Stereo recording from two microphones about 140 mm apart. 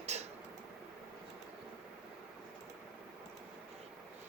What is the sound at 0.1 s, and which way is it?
Tick-tock, 50° right (ahead or behind).